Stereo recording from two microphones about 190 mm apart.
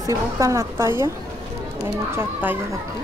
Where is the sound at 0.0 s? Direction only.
15° right (ahead or behind).